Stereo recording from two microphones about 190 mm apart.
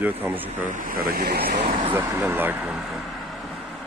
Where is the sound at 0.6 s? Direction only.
45° right (ahead or behind).